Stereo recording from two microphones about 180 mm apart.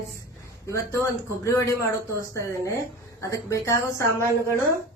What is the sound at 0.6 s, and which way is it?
Speech, 15° left (ahead or behind).